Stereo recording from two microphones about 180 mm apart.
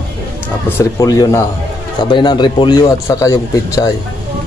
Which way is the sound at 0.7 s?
20° left (ahead or behind).